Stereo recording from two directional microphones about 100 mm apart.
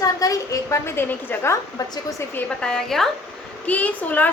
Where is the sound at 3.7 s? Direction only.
15° left (ahead or behind).